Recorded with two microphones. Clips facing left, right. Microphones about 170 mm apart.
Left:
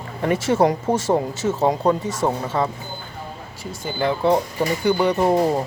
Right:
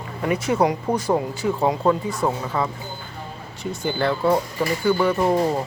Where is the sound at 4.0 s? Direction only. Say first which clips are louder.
Left 2 dB; 20° left (ahead or behind).